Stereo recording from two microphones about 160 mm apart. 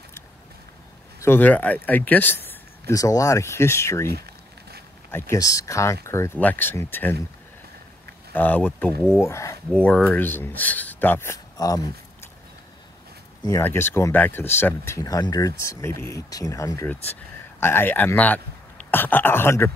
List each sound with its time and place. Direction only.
1.2 s speech: 10° left (ahead or behind)
5.1 s speech: 15° left (ahead or behind)
8.3 s speech: 10° left (ahead or behind)
9.7 s speech: 5° left (ahead or behind); by 11.9 s 20° left (ahead or behind)
13.5 s speech: 15° left (ahead or behind)